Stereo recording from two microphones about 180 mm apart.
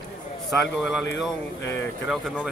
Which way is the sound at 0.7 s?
Centre (ahead or behind).